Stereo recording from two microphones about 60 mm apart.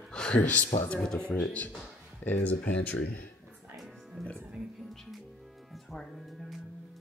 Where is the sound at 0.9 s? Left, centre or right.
Centre.